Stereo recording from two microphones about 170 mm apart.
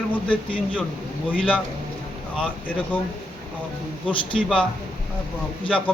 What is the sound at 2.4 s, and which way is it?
Speech, 10° left (ahead or behind).